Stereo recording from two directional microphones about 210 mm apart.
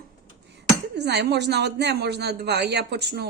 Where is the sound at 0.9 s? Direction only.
55° right (ahead or behind).